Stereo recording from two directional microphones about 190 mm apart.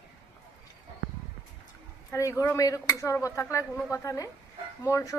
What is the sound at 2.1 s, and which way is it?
A woman's voice, 15° left (ahead or behind).